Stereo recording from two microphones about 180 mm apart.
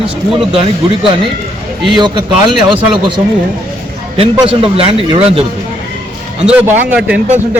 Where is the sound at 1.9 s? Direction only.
25° right (ahead or behind).